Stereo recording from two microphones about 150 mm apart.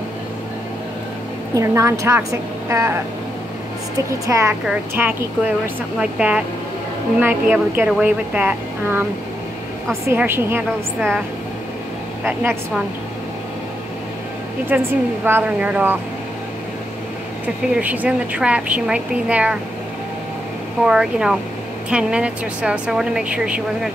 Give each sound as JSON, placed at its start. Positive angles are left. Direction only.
{"t": 1.5, "sound": "a woman's voice", "side_deg": -20}
{"t": 4.3, "sound": "a woman's voice", "side_deg": -20}
{"t": 10.0, "sound": "a woman's voice", "side_deg": -15}
{"t": 11.0, "sound": "speech", "side_deg": -5}
{"t": 14.7, "sound": "a woman's voice", "side_deg": -15}
{"t": 17.7, "sound": "a woman's voice", "side_deg": -10}
{"t": 20.8, "sound": "a woman's voice", "side_deg": -5}